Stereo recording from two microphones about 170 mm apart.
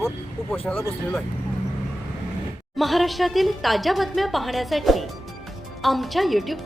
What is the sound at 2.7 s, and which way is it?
A woman's voice, centre (ahead or behind).